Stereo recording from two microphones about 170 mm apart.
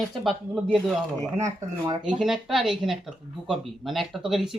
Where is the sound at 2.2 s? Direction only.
Centre (ahead or behind).